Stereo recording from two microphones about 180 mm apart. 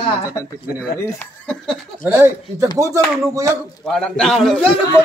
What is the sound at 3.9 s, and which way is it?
Speech, 5° left (ahead or behind).